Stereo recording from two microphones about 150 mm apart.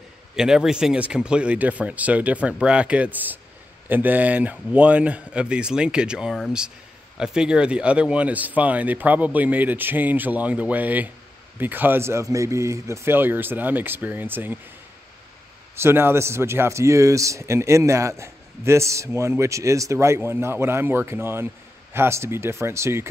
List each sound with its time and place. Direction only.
0.4 s a man's voice: 5° right (ahead or behind)
15.7 s a man's voice: 15° right (ahead or behind)